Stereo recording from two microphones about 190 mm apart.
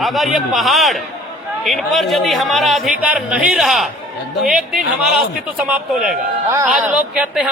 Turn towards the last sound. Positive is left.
turn(degrees=-5)  # may be behind; listen again after turning